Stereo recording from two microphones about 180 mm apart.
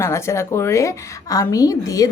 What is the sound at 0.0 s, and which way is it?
A woman's voice, 15° left (ahead or behind).